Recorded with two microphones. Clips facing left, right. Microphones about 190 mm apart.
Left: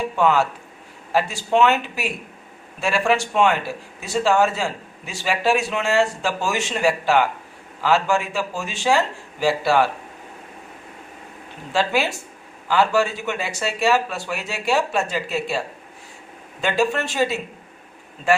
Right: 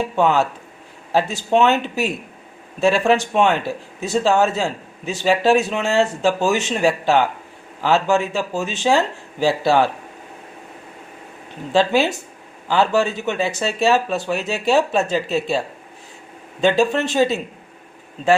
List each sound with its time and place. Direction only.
1.1 s a man's voice: 20° right (ahead or behind)
11.7 s a man's voice: 20° right (ahead or behind)
16.6 s a man's voice: 20° right (ahead or behind)